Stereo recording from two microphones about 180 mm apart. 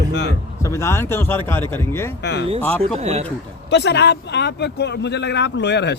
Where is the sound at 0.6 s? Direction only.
15° left (ahead or behind).